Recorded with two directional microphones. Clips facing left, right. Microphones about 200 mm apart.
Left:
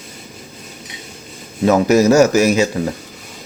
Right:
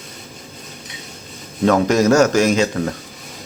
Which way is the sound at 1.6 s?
10° left (ahead or behind).